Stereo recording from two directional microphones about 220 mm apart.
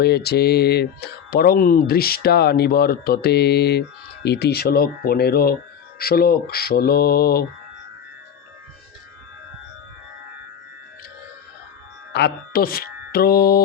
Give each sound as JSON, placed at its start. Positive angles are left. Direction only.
{"t": 0.0, "sound": "speech", "side_deg": 45}
{"t": 12.1, "sound": "speech", "side_deg": 45}